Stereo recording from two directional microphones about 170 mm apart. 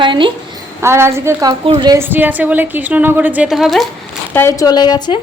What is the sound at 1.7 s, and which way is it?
Speech, 30° right (ahead or behind).